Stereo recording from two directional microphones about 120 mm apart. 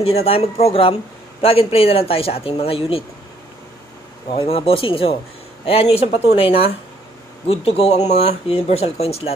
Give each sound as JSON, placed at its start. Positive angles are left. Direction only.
{"t": 0.0, "sound": "speech", "side_deg": 55}
{"t": 4.3, "sound": "speech", "side_deg": 50}